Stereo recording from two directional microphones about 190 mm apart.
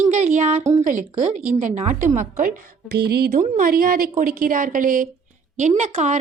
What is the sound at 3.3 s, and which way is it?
A woman's voice, 45° right (ahead or behind).